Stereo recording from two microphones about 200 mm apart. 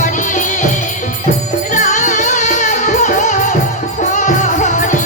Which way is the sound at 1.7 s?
35° left (ahead or behind).